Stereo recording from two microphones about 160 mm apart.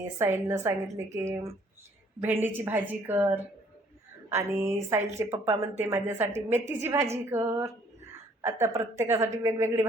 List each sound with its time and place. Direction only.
0.0 s a woman's voice: 15° right (ahead or behind)